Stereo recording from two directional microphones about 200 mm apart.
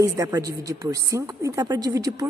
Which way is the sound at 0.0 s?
15° right (ahead or behind).